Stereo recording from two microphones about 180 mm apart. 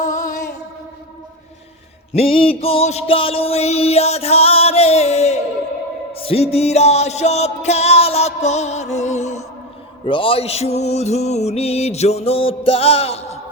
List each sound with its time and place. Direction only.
2.1 s music: 30° left (ahead or behind)
10.1 s music: 30° left (ahead or behind)